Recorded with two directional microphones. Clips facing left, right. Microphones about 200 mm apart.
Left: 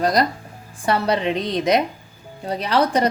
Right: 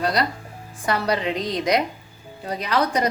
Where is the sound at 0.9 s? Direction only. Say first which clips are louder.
Left 3 dB; 25° left (ahead or behind).